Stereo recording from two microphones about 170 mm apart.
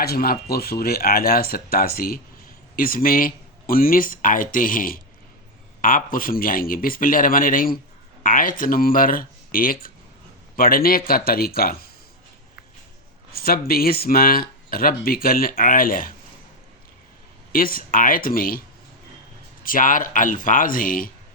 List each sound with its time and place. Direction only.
0.0 s speech: 60° left (ahead or behind)
13.3 s speech: 60° left (ahead or behind)
17.5 s speech: 55° left (ahead or behind)
19.6 s speech: 55° left (ahead or behind)